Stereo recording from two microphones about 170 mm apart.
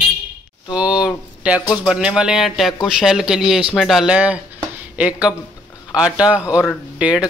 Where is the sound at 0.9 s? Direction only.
25° left (ahead or behind).